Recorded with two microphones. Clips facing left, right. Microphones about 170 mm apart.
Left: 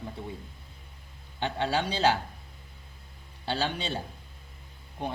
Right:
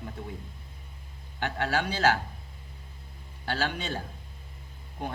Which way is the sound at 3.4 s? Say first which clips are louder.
Left 1 dB; 25° left (ahead or behind).